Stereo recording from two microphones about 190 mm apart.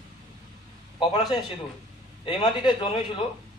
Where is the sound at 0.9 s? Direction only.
25° left (ahead or behind).